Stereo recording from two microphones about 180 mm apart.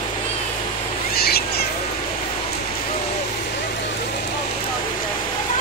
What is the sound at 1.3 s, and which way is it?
Cat, 60° left (ahead or behind).